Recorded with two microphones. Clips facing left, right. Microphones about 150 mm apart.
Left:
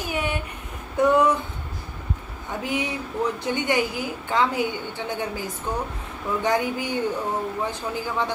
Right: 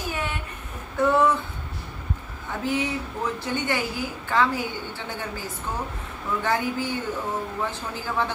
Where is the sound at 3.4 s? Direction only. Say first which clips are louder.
Left 3 dB; 15° left (ahead or behind).